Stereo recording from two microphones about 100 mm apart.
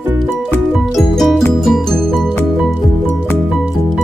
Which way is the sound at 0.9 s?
Centre (ahead or behind).